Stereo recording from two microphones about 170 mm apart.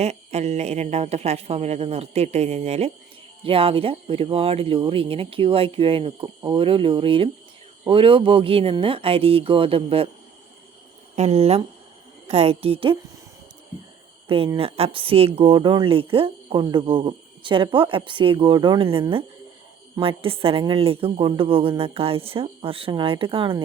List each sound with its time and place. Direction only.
0.0 s speech: 40° right (ahead or behind)
11.1 s speech: 40° right (ahead or behind)
14.3 s speech: 35° right (ahead or behind)